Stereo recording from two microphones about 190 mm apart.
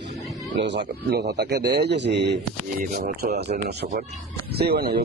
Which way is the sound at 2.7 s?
50° right (ahead or behind).